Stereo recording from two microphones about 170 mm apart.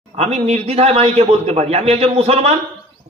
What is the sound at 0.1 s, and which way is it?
A man's voice, 40° right (ahead or behind).